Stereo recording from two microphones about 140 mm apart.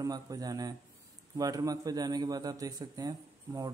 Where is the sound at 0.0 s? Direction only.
25° right (ahead or behind).